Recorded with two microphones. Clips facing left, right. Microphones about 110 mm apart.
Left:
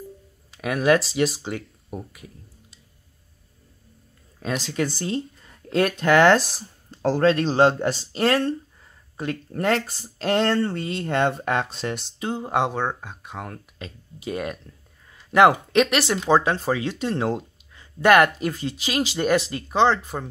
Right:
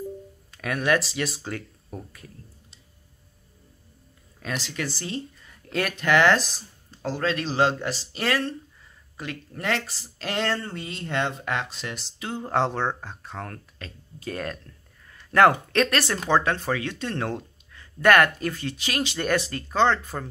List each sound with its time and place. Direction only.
0.6 s speech: 20° left (ahead or behind)
1.9 s speech: 15° left (ahead or behind)
4.4 s speech: 30° left (ahead or behind)
7.0 s speech: 50° left (ahead or behind)
7.2 s speech: 35° left (ahead or behind)
11.4 s speech: 35° left (ahead or behind)
12.2 s speech: 25° left (ahead or behind)
12.4 s speech: 10° left (ahead or behind)